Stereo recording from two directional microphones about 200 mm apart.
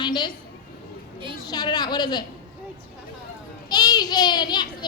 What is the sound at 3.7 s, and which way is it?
Speech, 20° left (ahead or behind).